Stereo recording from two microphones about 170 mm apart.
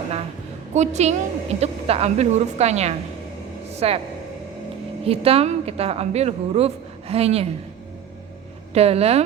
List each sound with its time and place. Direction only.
0.7 s a woman's voice: 40° right (ahead or behind)
3.7 s a sound: 35° right (ahead or behind)
5.0 s a woman's voice: 35° right (ahead or behind)
8.7 s a woman's voice: 35° right (ahead or behind)